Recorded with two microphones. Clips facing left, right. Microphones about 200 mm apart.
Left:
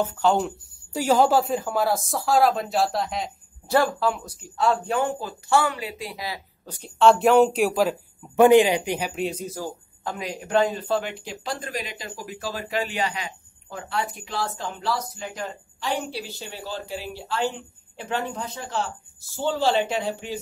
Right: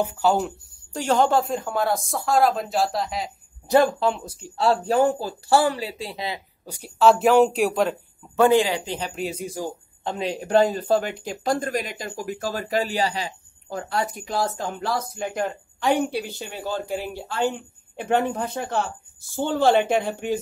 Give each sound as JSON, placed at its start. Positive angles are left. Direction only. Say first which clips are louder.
{"t": 0.0, "sound": "speech", "louder": "even", "side_deg": -10}
{"t": 3.6, "sound": "speech", "louder": "right 3 dB", "side_deg": -20}
{"t": 6.6, "sound": "speech", "louder": "even", "side_deg": -10}
{"t": 8.4, "sound": "speech", "louder": "left 3 dB", "side_deg": 15}
{"t": 9.1, "sound": "speech", "louder": "left 2 dB", "side_deg": 0}
{"t": 9.4, "sound": "a man's voice", "louder": "right 2 dB", "side_deg": -15}
{"t": 10.1, "sound": "speech", "louder": "right 3 dB", "side_deg": -30}